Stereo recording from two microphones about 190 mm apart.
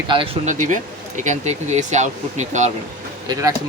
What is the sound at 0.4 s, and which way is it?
Speech, 40° right (ahead or behind).